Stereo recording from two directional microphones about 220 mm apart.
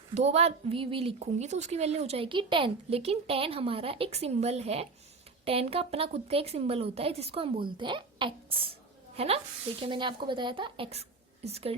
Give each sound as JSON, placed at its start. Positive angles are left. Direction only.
{"t": 0.1, "sound": "a child's voice", "side_deg": -30}